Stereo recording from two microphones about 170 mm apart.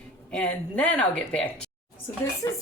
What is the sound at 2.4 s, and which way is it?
Speech, 20° left (ahead or behind).